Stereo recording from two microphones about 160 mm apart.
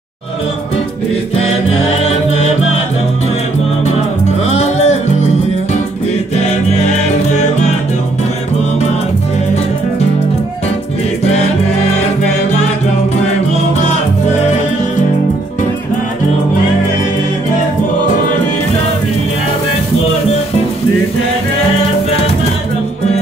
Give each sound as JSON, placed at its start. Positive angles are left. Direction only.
{"t": 1.3, "sound": "music", "side_deg": 40}
{"t": 4.5, "sound": "music", "side_deg": 45}
{"t": 22.1, "sound": "music", "side_deg": 40}